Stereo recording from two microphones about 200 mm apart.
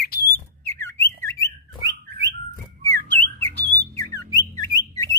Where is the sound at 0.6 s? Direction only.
10° left (ahead or behind).